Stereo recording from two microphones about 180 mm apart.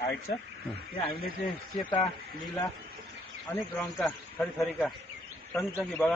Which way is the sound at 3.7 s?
10° left (ahead or behind).